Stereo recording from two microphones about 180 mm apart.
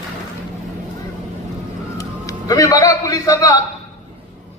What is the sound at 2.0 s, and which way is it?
A man's voice, 20° left (ahead or behind).